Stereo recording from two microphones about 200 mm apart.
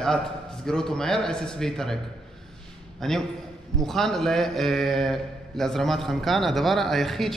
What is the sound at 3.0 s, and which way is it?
A man's voice, centre (ahead or behind).